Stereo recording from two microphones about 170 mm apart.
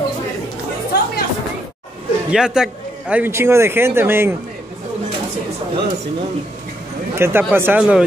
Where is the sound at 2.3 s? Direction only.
5° right (ahead or behind).